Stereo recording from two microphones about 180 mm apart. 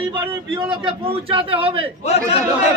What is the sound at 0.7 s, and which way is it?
A man's voice, 30° right (ahead or behind).